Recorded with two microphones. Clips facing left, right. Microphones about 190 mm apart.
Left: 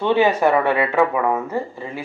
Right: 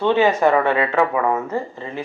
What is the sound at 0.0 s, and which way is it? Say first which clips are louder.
Speech: right 1 dB; 15° left (ahead or behind).